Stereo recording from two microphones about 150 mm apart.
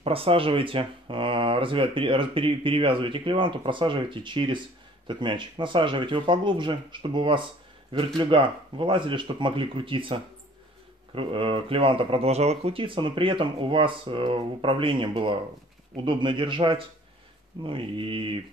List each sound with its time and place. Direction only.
0.0 s speech: 40° right (ahead or behind)